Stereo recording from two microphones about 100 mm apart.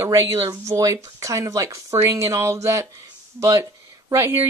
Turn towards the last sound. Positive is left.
turn(degrees=-30)  # may be behind; listen again after turning